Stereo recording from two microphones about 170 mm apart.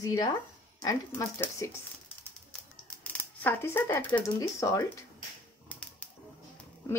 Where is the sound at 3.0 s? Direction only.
10° left (ahead or behind).